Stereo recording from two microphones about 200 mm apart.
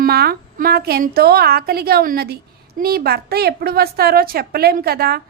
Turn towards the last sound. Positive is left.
turn(degrees=-50)  # may be behind; listen again after turning